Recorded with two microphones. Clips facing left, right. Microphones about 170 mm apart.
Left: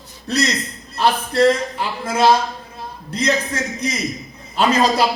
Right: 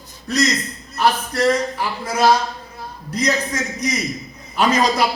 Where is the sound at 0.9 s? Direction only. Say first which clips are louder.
Left 2 dB; 25° left (ahead or behind).